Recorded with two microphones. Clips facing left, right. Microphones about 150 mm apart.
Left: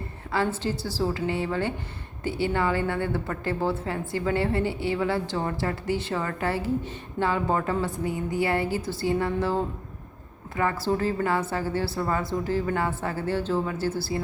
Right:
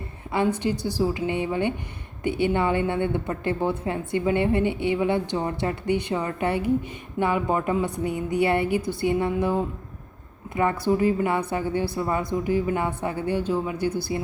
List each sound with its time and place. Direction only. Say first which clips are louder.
0.5 s a woman's voice: right 4 dB; 15° right (ahead or behind)